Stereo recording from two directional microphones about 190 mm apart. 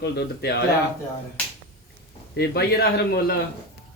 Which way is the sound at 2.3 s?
55° left (ahead or behind).